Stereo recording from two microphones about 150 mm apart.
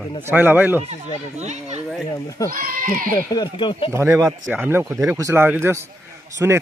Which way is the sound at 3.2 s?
30° left (ahead or behind).